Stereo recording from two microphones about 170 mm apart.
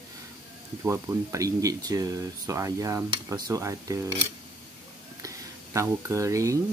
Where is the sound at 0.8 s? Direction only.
15° right (ahead or behind).